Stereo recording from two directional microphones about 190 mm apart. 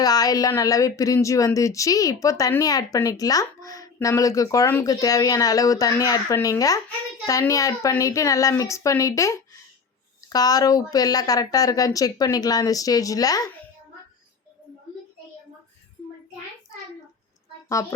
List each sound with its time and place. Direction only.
0.0 s a woman's voice: 20° left (ahead or behind)
17.8 s a woman's voice: 20° left (ahead or behind)